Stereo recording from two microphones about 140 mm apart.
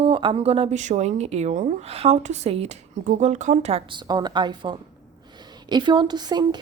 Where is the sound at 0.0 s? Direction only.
35° right (ahead or behind).